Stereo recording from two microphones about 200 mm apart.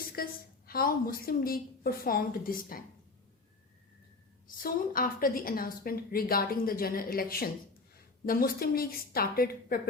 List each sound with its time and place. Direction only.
0.2 s a sound: 50° left (ahead or behind)
0.7 s a woman's voice: 45° left (ahead or behind)
4.4 s a woman's voice: 45° left (ahead or behind)